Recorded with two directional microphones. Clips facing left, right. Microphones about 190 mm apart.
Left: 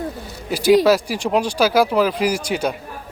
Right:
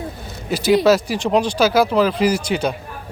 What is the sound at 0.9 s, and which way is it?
Speech, 10° left (ahead or behind).